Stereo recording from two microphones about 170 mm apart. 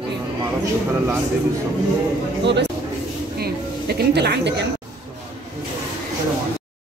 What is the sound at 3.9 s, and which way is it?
Speech, 75° right (ahead or behind).